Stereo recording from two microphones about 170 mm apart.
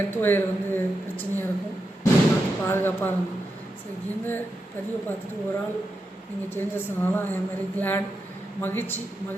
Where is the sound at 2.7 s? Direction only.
10° left (ahead or behind).